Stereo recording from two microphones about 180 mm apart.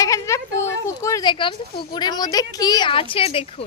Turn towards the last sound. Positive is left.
turn(degrees=30)  # may be behind; listen again after turning